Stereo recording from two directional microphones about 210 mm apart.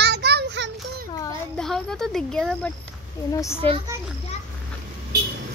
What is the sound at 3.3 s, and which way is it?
Speech, 15° left (ahead or behind).